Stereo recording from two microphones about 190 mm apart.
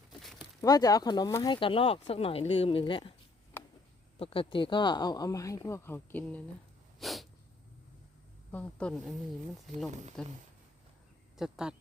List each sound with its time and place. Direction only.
0.1 s a sound: centre (ahead or behind)
0.6 s speech: 20° left (ahead or behind)
3.6 s a sound: 10° left (ahead or behind)
4.2 s speech: 30° left (ahead or behind); by 6.4 s 10° left (ahead or behind)
7.0 s sneeze: centre (ahead or behind)
8.5 s speech: 5° left (ahead or behind)
10.2 s speech: centre (ahead or behind)
11.3 s speech: centre (ahead or behind)